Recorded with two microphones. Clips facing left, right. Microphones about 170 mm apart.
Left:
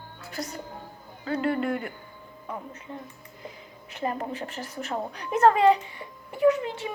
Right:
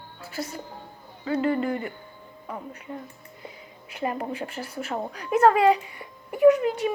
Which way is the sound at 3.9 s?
10° right (ahead or behind).